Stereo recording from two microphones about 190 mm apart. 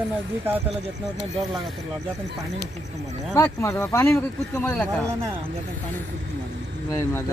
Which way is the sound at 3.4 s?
15° left (ahead or behind).